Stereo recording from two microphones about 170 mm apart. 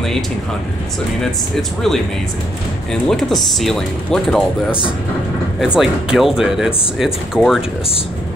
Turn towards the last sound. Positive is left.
turn(degrees=0)  # may be behind; listen again after turning